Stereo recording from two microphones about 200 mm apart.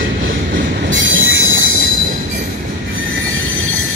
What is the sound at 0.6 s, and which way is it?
Train wheels squealing, 70° right (ahead or behind).